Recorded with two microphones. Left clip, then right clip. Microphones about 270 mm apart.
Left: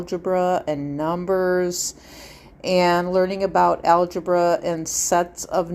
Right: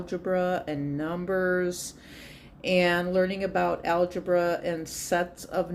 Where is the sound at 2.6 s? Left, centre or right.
Left.